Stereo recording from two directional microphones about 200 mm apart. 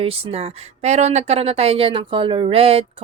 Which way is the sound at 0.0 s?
30° right (ahead or behind).